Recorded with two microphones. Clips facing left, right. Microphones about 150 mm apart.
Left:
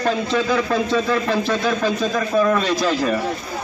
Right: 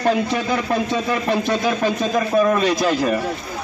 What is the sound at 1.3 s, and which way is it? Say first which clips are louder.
A man's voice: even; 15° right (ahead or behind).